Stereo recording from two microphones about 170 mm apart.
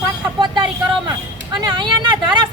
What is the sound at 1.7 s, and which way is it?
Speech, 30° right (ahead or behind).